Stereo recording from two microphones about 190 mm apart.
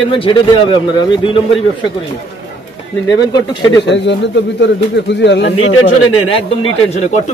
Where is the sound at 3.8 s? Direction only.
70° left (ahead or behind).